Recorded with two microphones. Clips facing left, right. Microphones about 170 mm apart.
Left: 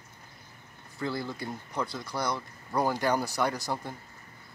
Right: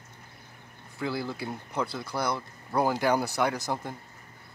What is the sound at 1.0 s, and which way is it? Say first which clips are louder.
Speech: right 1 dB; 5° right (ahead or behind).